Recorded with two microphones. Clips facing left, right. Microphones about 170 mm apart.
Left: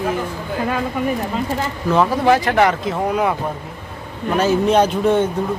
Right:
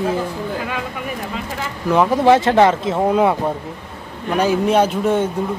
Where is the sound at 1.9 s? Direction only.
15° right (ahead or behind).